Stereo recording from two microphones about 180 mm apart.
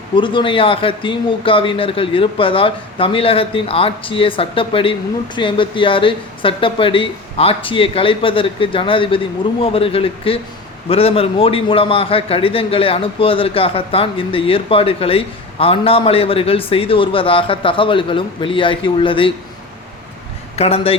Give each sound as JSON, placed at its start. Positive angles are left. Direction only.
{"t": 0.2, "sound": "a man's voice", "side_deg": 25}
{"t": 20.6, "sound": "a man's voice", "side_deg": 35}